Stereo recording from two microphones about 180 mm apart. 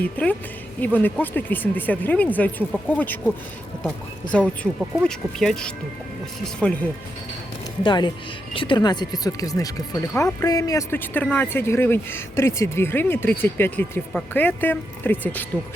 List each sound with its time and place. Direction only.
0.8 s speech: 10° left (ahead or behind)
7.9 s speech: 25° left (ahead or behind); by 15.4 s 10° left (ahead or behind)